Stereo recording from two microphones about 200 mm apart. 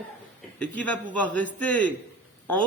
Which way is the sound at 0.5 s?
5° left (ahead or behind).